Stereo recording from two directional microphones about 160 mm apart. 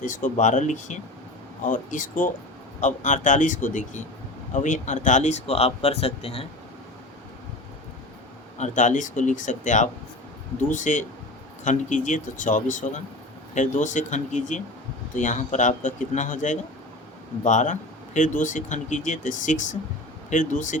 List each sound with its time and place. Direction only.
0.0 s speech: 55° left (ahead or behind); by 6.4 s 40° left (ahead or behind)
8.5 s speech: 50° left (ahead or behind)